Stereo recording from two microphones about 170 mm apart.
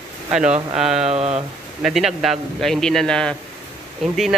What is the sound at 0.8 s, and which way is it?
Speech, 5° right (ahead or behind).